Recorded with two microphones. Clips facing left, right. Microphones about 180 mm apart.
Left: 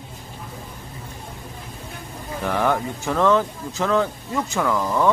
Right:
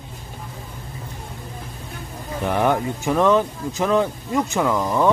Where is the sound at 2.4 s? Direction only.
15° right (ahead or behind).